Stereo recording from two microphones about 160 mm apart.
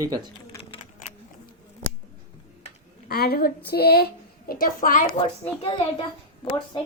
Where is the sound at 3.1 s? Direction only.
70° left (ahead or behind).